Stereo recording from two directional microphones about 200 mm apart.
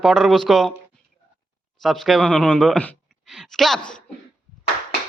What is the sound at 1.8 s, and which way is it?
Speech, centre (ahead or behind).